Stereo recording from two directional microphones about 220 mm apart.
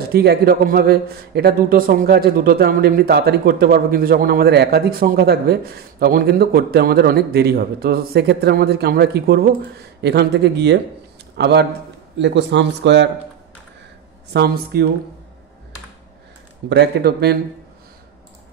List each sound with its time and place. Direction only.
0.1 s speech: 45° right (ahead or behind)
14.3 s speech: 45° right (ahead or behind)
16.6 s speech: 50° right (ahead or behind)